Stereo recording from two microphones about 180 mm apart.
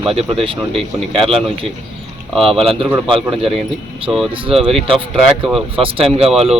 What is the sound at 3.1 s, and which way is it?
Speech, 30° right (ahead or behind).